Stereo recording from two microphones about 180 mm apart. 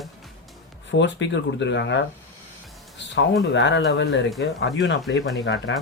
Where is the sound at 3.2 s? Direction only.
90° left.